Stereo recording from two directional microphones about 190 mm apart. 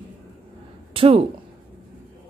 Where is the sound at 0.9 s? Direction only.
30° right (ahead or behind).